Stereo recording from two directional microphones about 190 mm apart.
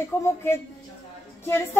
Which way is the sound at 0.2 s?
15° left (ahead or behind).